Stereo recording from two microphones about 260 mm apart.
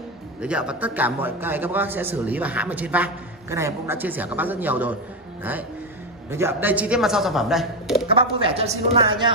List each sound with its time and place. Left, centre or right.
0.4 s a man's voice: centre
8.1 s speech: right